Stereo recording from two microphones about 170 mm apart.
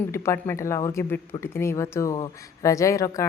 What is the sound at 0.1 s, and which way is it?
Speech, 15° left (ahead or behind).